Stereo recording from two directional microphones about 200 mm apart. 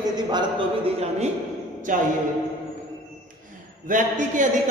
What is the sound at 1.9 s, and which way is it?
Speech, 40° right (ahead or behind).